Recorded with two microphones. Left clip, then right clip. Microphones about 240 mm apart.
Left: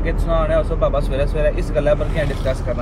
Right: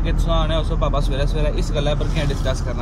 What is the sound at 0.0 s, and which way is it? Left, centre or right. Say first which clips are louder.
Speech: left 3 dB; centre.